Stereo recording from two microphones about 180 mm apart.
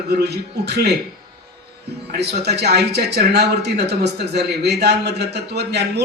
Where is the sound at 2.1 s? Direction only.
65° right (ahead or behind).